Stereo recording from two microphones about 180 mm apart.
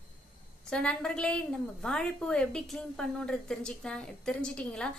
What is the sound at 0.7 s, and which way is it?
A woman's voice, 5° left (ahead or behind).